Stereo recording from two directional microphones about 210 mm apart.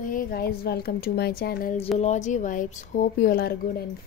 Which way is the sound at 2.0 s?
35° left (ahead or behind).